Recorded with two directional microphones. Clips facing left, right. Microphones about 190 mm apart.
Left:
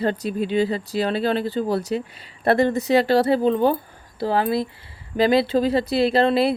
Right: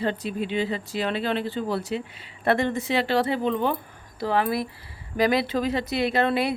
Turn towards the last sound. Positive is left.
turn(degrees=30)  # may be behind; listen again after turning